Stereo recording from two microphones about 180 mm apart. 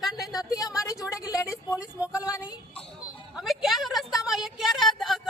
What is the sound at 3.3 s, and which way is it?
A woman's voice, centre (ahead or behind).